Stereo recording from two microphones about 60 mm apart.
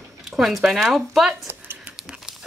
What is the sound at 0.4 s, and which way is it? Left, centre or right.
Speech, centre.